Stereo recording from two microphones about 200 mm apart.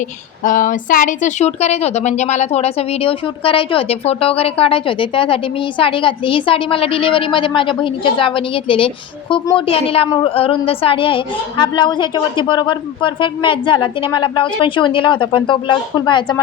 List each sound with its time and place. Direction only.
0.4 s a woman's voice: 40° left (ahead or behind); by 16.4 s 20° left (ahead or behind)